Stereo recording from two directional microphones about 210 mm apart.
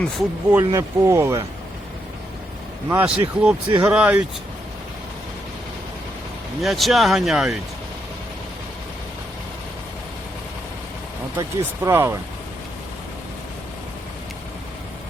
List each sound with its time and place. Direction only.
0.6 s speech: 15° right (ahead or behind)
2.9 s speech: 10° right (ahead or behind)
6.6 s speech: centre (ahead or behind)
11.3 s speech: 10° right (ahead or behind)